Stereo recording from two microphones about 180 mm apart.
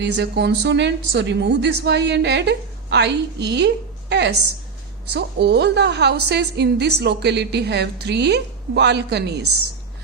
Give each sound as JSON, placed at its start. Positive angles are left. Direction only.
{"t": 0.0, "sound": "a woman's voice", "side_deg": -75}